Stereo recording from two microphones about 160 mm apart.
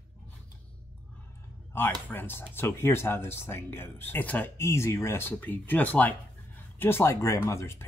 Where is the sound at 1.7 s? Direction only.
15° left (ahead or behind).